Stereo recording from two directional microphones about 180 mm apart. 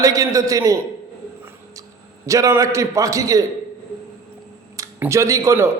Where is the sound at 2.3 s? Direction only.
20° right (ahead or behind).